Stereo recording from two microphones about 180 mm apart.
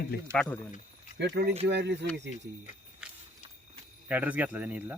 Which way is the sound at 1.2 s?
70° right (ahead or behind).